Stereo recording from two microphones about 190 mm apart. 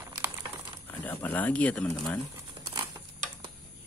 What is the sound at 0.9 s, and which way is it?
Speech, 10° left (ahead or behind).